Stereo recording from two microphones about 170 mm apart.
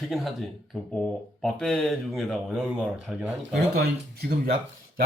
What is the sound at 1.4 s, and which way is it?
Speech, 5° left (ahead or behind).